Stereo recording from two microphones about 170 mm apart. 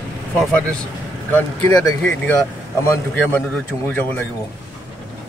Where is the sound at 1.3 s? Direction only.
15° left (ahead or behind).